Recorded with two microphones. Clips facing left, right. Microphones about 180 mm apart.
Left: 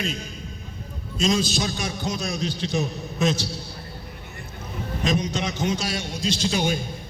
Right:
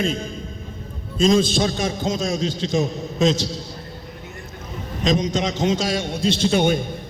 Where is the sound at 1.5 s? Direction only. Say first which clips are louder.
Right 6 dB; 25° right (ahead or behind).